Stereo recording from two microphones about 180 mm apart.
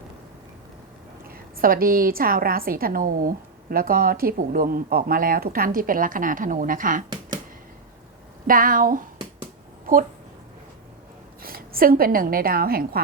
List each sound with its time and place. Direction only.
1.3 s a woman's voice: 55° right (ahead or behind)
8.4 s a woman's voice: 50° right (ahead or behind)
11.4 s a woman's voice: 55° right (ahead or behind)